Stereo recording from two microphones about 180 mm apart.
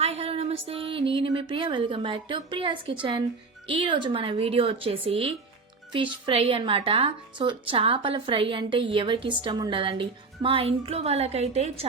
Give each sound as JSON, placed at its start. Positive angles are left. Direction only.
{"t": 0.0, "sound": "a woman's voice", "side_deg": -35}